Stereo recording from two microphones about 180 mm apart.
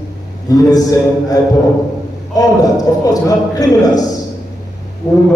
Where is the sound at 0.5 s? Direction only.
20° left (ahead or behind).